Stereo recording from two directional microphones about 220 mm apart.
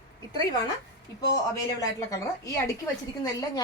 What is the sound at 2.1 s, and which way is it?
A woman's voice, 15° left (ahead or behind).